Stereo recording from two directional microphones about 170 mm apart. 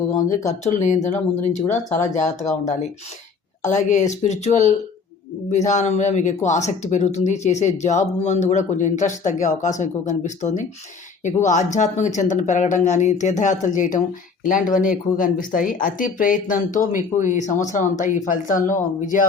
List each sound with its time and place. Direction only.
0.6 s speech: 45° left (ahead or behind)
3.7 s speech: 45° left (ahead or behind)